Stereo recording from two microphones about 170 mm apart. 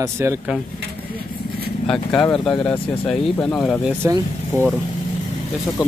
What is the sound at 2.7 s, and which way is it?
Speech, 30° left (ahead or behind).